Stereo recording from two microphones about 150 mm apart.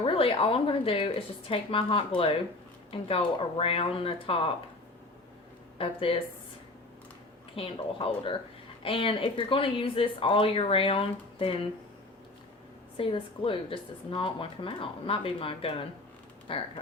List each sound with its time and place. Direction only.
0.0 s speech: 40° left (ahead or behind)
5.7 s speech: 40° left (ahead or behind)
7.5 s speech: 40° left (ahead or behind)
13.0 s speech: 35° left (ahead or behind)